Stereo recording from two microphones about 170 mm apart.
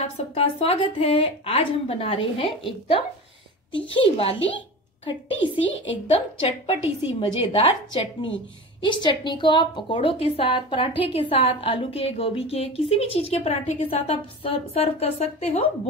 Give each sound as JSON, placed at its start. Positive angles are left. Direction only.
{"t": 0.3, "sound": "a woman's voice", "side_deg": 35}
{"t": 5.9, "sound": "a woman's voice", "side_deg": 30}